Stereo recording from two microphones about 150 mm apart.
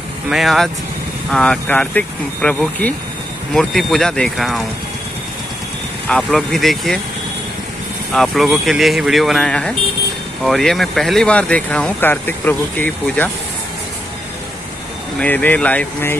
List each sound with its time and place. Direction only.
0.3 s speech: centre (ahead or behind)
6.0 s speech: 5° left (ahead or behind)
8.1 s speech: centre (ahead or behind)
15.1 s speech: 10° left (ahead or behind)